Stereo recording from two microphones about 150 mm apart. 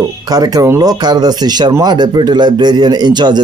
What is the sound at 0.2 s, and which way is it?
Speech, 25° right (ahead or behind).